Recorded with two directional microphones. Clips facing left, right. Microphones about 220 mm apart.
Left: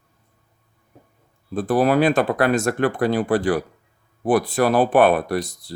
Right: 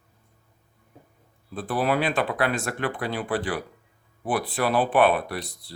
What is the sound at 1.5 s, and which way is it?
Speech, 45° left (ahead or behind).